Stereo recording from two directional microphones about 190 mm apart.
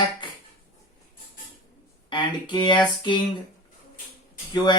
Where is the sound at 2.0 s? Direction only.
25° left (ahead or behind).